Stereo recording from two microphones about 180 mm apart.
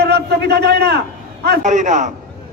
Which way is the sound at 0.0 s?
65° right (ahead or behind).